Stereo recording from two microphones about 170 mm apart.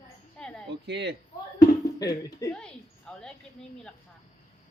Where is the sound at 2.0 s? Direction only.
20° left (ahead or behind).